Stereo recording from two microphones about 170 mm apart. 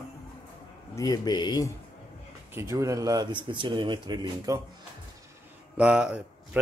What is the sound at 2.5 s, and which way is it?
Speech, 15° right (ahead or behind).